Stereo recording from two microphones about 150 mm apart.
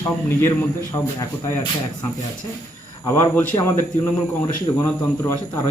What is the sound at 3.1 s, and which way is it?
A man's voice, 15° left (ahead or behind).